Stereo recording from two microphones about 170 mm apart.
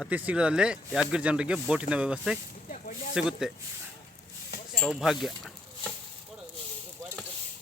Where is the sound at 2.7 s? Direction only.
50° left (ahead or behind).